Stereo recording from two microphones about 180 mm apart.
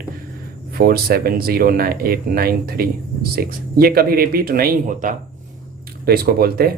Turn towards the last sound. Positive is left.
turn(degrees=-55)  # may be behind; listen again after turning